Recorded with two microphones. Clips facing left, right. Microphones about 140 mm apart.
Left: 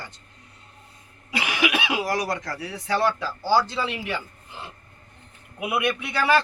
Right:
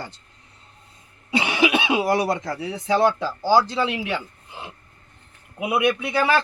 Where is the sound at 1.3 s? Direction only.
30° right (ahead or behind).